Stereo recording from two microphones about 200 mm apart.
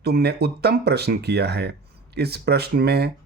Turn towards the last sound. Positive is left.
turn(degrees=-55)  # may be behind; listen again after turning